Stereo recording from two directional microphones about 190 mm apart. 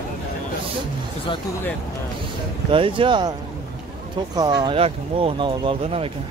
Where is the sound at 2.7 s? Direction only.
25° right (ahead or behind).